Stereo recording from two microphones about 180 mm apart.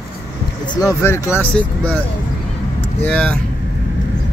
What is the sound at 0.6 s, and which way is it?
Speech, 20° left (ahead or behind).